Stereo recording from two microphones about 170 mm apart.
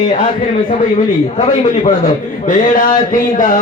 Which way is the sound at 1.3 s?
30° left (ahead or behind).